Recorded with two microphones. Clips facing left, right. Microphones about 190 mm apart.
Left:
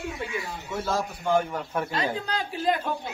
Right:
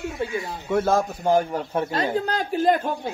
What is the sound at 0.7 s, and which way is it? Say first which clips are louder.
Speech: right 8 dB; 55° right (ahead or behind).